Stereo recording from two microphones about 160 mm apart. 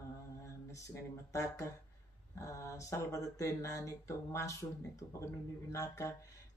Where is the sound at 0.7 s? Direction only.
20° left (ahead or behind).